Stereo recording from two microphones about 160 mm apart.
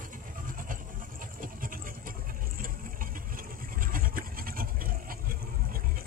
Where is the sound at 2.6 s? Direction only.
60° right (ahead or behind).